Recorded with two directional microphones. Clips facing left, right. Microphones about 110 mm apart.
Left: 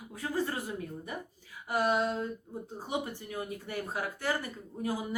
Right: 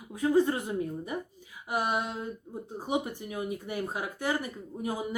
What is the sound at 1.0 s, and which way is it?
Speech, 15° right (ahead or behind).